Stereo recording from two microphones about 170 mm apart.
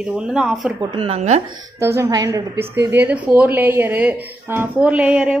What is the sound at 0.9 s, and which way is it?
Speech, 35° right (ahead or behind).